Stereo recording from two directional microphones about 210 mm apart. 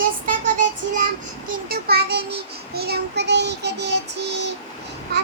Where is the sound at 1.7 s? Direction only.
50° right (ahead or behind).